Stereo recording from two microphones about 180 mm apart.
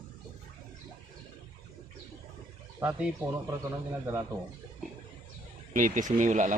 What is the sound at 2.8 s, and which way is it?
Speech, 5° right (ahead or behind).